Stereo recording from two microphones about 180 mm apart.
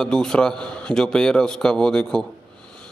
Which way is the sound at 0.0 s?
5° left (ahead or behind).